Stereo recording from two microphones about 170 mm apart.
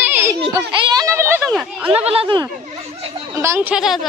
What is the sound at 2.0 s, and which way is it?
Speech, 35° right (ahead or behind).